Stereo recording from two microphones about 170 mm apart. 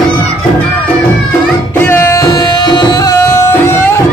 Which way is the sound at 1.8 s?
15° left (ahead or behind).